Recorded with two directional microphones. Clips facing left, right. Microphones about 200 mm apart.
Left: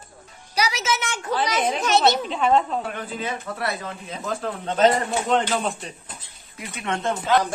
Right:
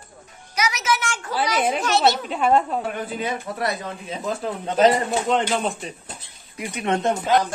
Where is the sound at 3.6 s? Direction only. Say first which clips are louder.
Right 3 dB; 15° right (ahead or behind).